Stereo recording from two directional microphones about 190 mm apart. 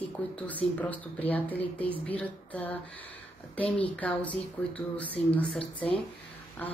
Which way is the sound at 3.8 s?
5° left (ahead or behind).